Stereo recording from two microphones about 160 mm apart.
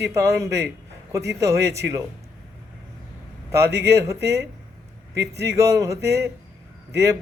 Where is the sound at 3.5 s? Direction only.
15° right (ahead or behind).